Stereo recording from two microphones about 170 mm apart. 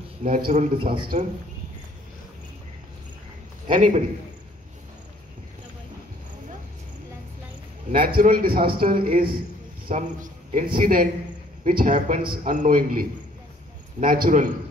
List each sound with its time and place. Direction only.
0.2 s a man's voice: 50° right (ahead or behind)
3.6 s a man's voice: 50° right (ahead or behind)
7.9 s a man's voice: 60° right (ahead or behind)
9.8 s a man's voice: 50° right (ahead or behind)